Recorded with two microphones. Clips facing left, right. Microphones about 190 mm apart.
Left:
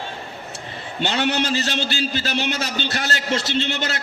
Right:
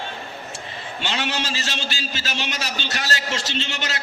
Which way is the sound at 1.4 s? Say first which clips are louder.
Left 6 dB; 60° left (ahead or behind).